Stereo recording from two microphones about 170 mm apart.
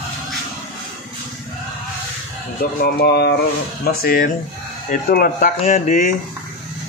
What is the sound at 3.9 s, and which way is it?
A man's voice, 60° left (ahead or behind).